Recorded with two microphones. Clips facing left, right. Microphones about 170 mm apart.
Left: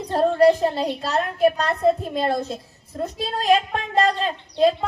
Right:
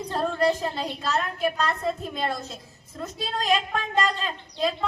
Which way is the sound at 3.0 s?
35° left (ahead or behind).